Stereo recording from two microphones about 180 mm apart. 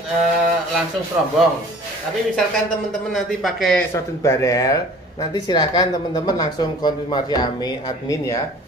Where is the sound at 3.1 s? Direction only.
Centre (ahead or behind).